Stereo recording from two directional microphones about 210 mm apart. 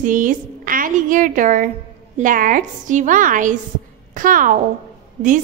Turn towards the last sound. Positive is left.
turn(degrees=-35)  # may be behind; listen again after turning